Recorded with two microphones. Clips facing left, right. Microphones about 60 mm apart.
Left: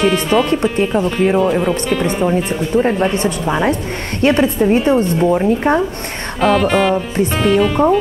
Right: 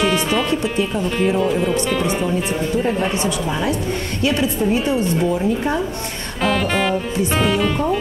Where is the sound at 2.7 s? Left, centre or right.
Left.